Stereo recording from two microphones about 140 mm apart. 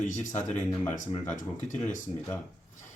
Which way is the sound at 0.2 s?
60° left (ahead or behind).